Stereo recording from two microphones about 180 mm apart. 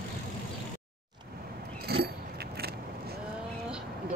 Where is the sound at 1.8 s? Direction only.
60° right (ahead or behind).